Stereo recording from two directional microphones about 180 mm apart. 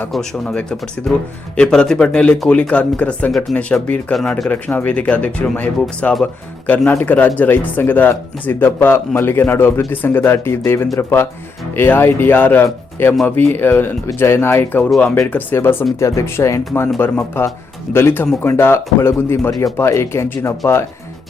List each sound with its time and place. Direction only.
0.0 s speech: 5° left (ahead or behind)